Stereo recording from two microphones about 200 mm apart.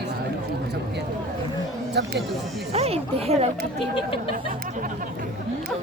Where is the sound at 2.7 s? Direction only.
30° right (ahead or behind).